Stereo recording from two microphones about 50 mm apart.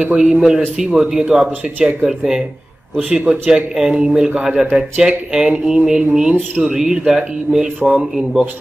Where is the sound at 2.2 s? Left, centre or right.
Centre.